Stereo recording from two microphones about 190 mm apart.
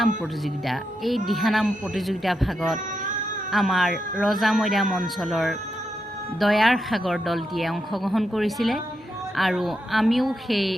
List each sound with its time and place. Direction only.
0.6 s speech: centre (ahead or behind)